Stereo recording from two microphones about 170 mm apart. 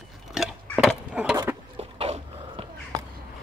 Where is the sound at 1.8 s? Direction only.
35° right (ahead or behind).